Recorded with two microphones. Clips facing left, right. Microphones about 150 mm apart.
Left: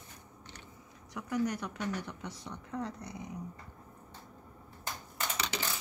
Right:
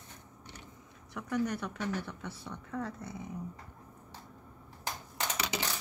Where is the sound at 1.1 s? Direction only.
10° left (ahead or behind).